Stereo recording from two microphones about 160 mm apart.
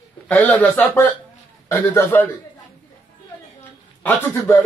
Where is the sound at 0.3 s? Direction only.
5° left (ahead or behind).